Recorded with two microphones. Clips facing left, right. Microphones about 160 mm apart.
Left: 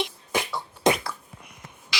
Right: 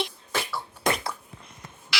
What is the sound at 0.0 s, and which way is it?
Beatboxing, 15° left (ahead or behind).